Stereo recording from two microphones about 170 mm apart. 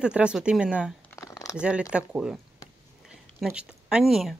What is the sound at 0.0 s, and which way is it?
Speech, 5° right (ahead or behind).